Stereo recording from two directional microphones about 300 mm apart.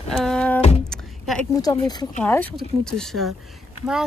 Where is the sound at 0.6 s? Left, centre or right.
Centre.